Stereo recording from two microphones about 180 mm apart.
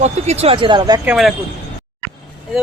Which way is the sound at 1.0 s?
Centre (ahead or behind).